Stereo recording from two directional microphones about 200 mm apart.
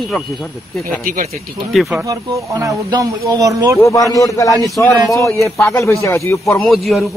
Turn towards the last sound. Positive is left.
turn(degrees=0)  # may be behind; listen again after turning